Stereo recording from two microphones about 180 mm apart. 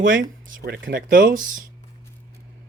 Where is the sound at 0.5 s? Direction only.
65° right (ahead or behind).